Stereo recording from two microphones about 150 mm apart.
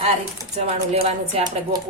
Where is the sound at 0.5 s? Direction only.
45° right (ahead or behind).